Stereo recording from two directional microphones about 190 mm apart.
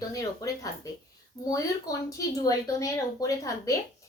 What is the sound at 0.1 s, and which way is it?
Speech, 15° left (ahead or behind).